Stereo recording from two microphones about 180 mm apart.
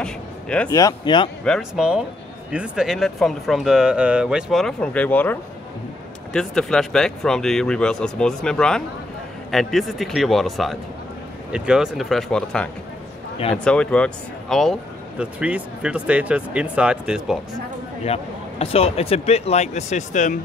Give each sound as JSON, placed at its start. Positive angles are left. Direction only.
{"t": 0.0, "sound": "vehicle", "side_deg": 5}
{"t": 0.7, "sound": "speech", "side_deg": 20}
{"t": 1.4, "sound": "speech", "side_deg": 0}
{"t": 13.7, "sound": "speech", "side_deg": 5}
{"t": 18.0, "sound": "speech", "side_deg": 35}